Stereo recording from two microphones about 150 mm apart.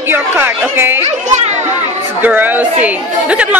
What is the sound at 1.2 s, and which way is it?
Children playing, 50° right (ahead or behind).